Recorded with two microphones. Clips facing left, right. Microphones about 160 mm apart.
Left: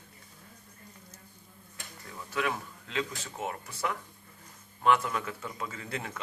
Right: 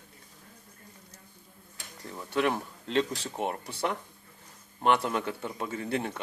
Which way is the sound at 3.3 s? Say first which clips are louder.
Right 4 dB; 60° right (ahead or behind).